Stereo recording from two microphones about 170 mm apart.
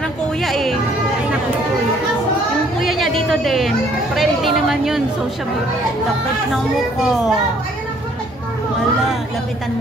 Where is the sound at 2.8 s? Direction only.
Centre (ahead or behind).